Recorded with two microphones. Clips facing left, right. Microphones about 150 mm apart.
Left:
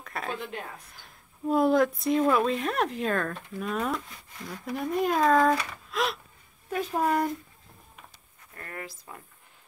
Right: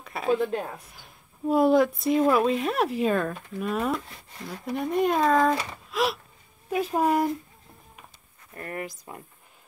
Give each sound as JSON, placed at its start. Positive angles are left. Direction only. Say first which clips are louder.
{"t": 0.0, "sound": "a sound", "louder": "right 9 dB", "side_deg": -5}
{"t": 0.4, "sound": "speech", "louder": "right 10 dB", "side_deg": -40}
{"t": 0.9, "sound": "speech", "louder": "right 2 dB", "side_deg": -5}
{"t": 5.9, "sound": "gasp", "louder": "right 3 dB", "side_deg": 0}
{"t": 6.9, "sound": "speech", "louder": "right 2 dB", "side_deg": -10}
{"t": 8.5, "sound": "speech", "louder": "right 6 dB", "side_deg": -25}